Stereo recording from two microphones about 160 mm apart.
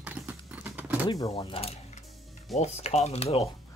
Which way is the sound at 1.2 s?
35° left (ahead or behind).